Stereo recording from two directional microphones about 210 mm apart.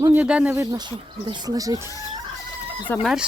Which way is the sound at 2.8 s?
5° left (ahead or behind).